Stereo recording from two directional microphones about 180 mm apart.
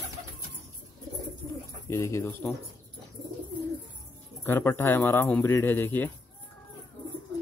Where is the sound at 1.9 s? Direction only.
15° left (ahead or behind).